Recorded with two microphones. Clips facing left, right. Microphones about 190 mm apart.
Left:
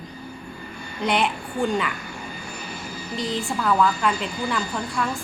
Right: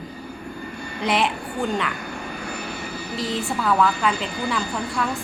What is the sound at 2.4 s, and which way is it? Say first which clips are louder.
Vehicle: right 4 dB; 65° right (ahead or behind).